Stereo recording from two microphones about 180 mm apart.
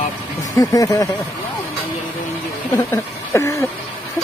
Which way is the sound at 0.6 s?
20° left (ahead or behind).